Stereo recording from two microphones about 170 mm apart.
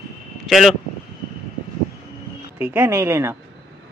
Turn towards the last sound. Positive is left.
turn(degrees=-15)  # may be behind; listen again after turning